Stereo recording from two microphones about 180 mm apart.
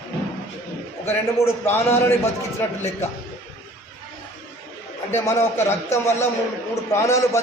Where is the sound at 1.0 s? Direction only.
15° left (ahead or behind).